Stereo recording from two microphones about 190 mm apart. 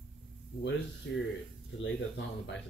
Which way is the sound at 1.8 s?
70° left (ahead or behind).